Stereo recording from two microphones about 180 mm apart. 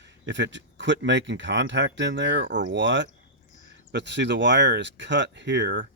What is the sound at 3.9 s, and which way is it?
Speech, 75° right (ahead or behind).